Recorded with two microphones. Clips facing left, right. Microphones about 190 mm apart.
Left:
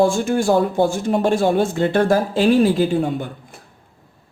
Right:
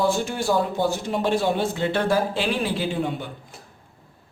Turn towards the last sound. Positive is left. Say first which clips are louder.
# left 7 dB
turn(degrees=45)  # may be behind; listen again after turning